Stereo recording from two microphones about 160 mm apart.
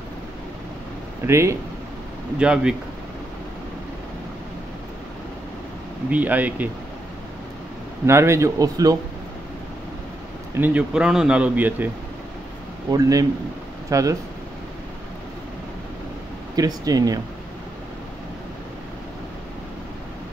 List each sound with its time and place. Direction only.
1.2 s speech: 15° right (ahead or behind)
2.3 s speech: 5° right (ahead or behind)
6.0 s speech: 10° right (ahead or behind)
8.1 s speech: 15° right (ahead or behind)
10.5 s speech: 10° right (ahead or behind)
12.9 s speech: 20° right (ahead or behind)
16.5 s speech: 25° right (ahead or behind)